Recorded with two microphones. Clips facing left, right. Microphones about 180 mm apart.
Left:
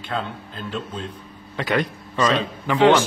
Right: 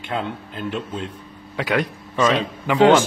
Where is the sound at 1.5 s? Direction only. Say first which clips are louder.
Right 1 dB; 10° right (ahead or behind).